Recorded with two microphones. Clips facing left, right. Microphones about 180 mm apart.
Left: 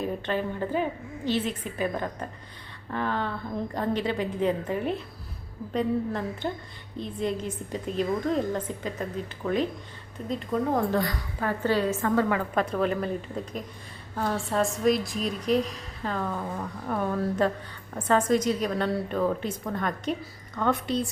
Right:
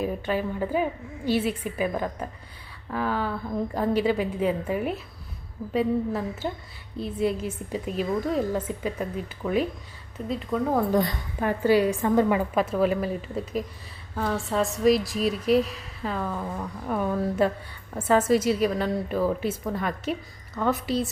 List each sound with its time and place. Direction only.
0.0 s a woman's voice: 10° right (ahead or behind)
11.0 s a woman's voice: 15° right (ahead or behind)
12.5 s a woman's voice: 5° right (ahead or behind)